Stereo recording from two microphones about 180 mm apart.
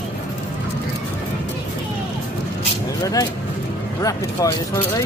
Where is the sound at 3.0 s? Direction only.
20° left (ahead or behind).